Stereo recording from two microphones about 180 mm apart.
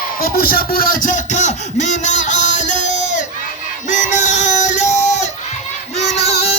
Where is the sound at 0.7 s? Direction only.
50° left (ahead or behind).